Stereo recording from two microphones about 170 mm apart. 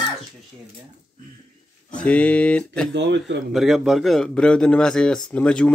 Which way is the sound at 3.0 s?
90° right.